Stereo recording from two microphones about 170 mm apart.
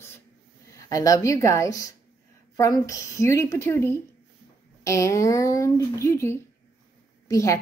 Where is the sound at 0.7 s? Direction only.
20° left (ahead or behind).